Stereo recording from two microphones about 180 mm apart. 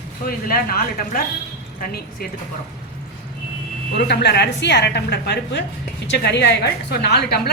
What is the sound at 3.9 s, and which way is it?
A woman's voice, 70° left (ahead or behind).